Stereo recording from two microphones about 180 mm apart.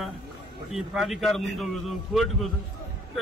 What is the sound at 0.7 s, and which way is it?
A man's voice, centre (ahead or behind).